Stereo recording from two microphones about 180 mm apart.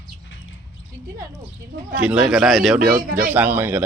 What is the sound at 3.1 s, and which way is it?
Speech, 50° right (ahead or behind).